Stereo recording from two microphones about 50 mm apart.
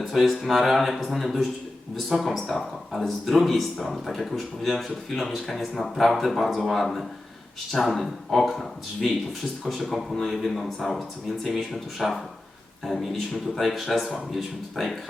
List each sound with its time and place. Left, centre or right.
0.0 s speech: centre